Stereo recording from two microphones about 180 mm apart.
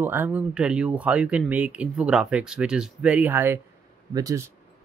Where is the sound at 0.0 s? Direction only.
10° right (ahead or behind).